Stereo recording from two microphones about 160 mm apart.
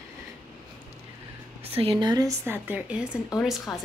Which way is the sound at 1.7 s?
35° right (ahead or behind).